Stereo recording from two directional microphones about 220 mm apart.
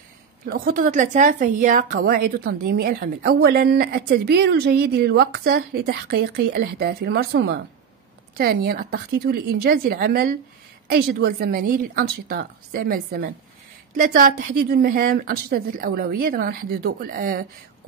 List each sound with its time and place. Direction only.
0.5 s a woman's voice: 40° right (ahead or behind)